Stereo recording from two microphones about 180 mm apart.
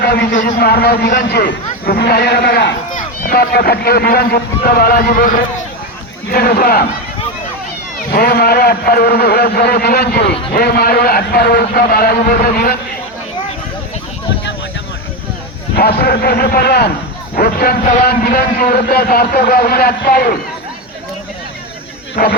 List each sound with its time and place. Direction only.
0.0 s a sound: 65° left (ahead or behind)
0.3 s a man's voice: 45° left (ahead or behind)
0.6 s speech: 60° left (ahead or behind)
7.9 s speech: 60° left (ahead or behind)
15.7 s speech: 60° left (ahead or behind)
22.2 s a man's voice: 50° left (ahead or behind)